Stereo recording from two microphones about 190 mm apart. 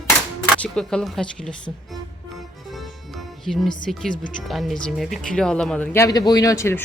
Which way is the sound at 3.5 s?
Centre (ahead or behind).